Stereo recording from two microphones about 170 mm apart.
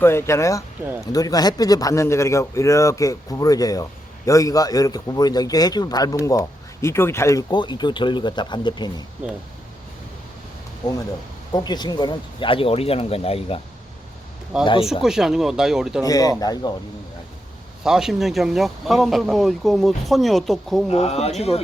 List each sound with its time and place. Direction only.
0.0 s a man's voice: 15° left (ahead or behind)
11.5 s speech: 25° left (ahead or behind)
14.6 s a man's voice: 30° left (ahead or behind)
15.0 s speech: centre (ahead or behind)
16.0 s a man's voice: 20° left (ahead or behind)
17.8 s speech: 5° right (ahead or behind)
20.9 s speech: 40° left (ahead or behind)